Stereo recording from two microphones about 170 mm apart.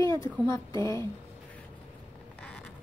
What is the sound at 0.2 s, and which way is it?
Speech, 20° left (ahead or behind).